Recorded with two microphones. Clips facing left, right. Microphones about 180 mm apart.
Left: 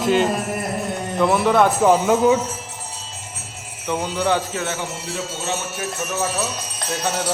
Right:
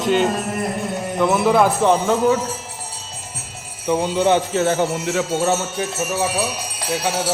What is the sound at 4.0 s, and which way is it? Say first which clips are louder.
Speech: right 4 dB; 25° right (ahead or behind).